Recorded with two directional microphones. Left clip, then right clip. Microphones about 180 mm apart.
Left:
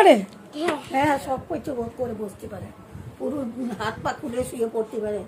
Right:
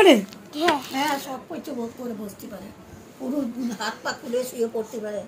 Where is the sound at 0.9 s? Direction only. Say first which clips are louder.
Left 4 dB; 50° left (ahead or behind).